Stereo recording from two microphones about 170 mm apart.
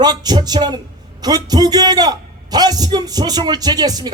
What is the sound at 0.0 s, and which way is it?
Speech, 25° right (ahead or behind).